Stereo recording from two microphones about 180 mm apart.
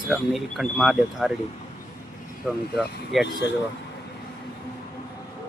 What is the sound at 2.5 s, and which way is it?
Speech, 5° left (ahead or behind).